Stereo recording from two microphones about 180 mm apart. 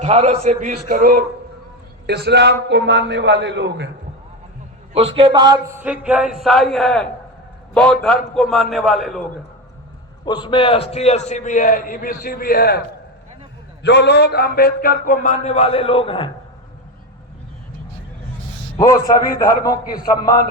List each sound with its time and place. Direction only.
0.0 s a man's voice: 35° right (ahead or behind)
2.0 s a man's voice: 65° right (ahead or behind)
4.9 s a sound: 30° right (ahead or behind); by 7.1 s 5° left (ahead or behind)
7.7 s a man's voice: 5° left (ahead or behind)
10.2 s a man's voice: 25° left (ahead or behind); by 12.8 s 60° left (ahead or behind)
13.8 s a man's voice: 70° left (ahead or behind); by 16.3 s 30° left (ahead or behind)
18.8 s a man's voice: 20° left (ahead or behind)